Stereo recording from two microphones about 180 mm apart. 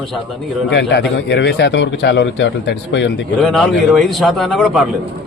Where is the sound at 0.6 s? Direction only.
75° left (ahead or behind).